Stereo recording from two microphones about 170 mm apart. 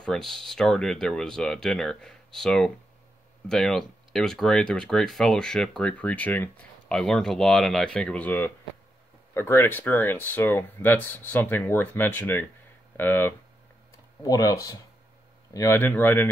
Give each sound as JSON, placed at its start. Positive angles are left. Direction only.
{"t": 0.0, "sound": "speech", "side_deg": 5}